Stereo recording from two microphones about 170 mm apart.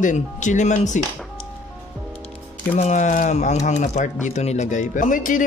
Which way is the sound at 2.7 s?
40° left (ahead or behind).